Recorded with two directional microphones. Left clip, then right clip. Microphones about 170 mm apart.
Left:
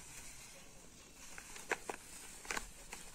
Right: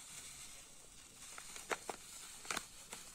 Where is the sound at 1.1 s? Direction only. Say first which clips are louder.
Even; 30° right (ahead or behind).